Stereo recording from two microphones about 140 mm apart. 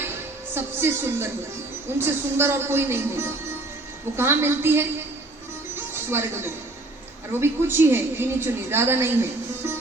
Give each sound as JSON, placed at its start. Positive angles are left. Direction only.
{"t": 0.5, "sound": "a woman's voice", "side_deg": -15}
{"t": 5.7, "sound": "music", "side_deg": -15}
{"t": 7.3, "sound": "a woman's voice", "side_deg": -15}